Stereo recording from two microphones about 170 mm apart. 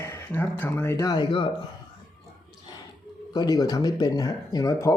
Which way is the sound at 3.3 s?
25° left (ahead or behind).